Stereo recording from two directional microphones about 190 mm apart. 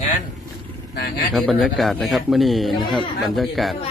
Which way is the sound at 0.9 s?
55° left (ahead or behind).